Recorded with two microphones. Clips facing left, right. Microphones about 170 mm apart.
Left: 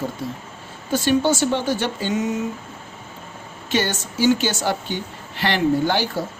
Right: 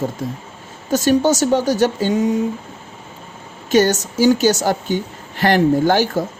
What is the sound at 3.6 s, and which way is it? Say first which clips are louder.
A woman's voice: right 8 dB; 40° right (ahead or behind).